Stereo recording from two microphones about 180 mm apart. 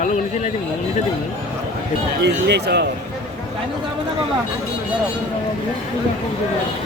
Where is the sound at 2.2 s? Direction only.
70° right (ahead or behind).